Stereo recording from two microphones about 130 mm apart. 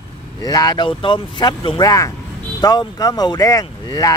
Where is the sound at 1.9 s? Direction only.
25° left (ahead or behind).